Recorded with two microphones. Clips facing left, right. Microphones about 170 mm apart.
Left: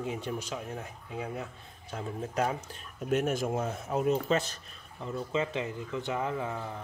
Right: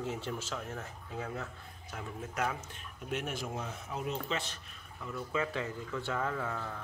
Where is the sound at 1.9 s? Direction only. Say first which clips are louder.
Left 6 dB; 30° left (ahead or behind).